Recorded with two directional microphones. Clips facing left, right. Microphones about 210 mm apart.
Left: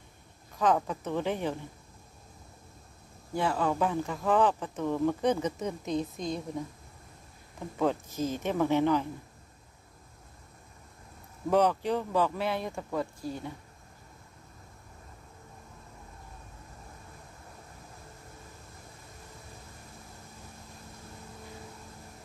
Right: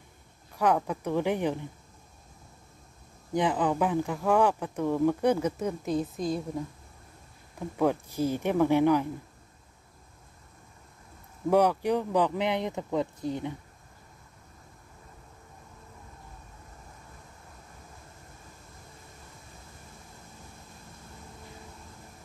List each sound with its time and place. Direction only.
0.6 s speech: 10° right (ahead or behind)
3.3 s speech: 15° right (ahead or behind)
7.8 s speech: 10° right (ahead or behind)
11.5 s speech: 10° right (ahead or behind)